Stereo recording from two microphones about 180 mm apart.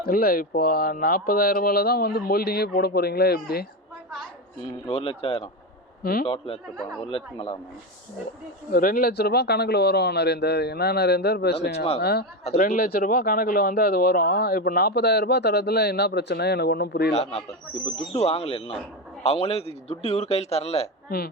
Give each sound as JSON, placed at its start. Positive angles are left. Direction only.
{"t": 0.0, "sound": "speech", "side_deg": 55}
{"t": 4.9, "sound": "a man's voice", "side_deg": 30}
{"t": 6.0, "sound": "a man's voice", "side_deg": 55}
{"t": 6.2, "sound": "a man's voice", "side_deg": 30}
{"t": 8.7, "sound": "speech", "side_deg": 50}
{"t": 12.5, "sound": "a man's voice", "side_deg": 40}
{"t": 12.7, "sound": "speech", "side_deg": 55}
{"t": 17.1, "sound": "a man's voice", "side_deg": 35}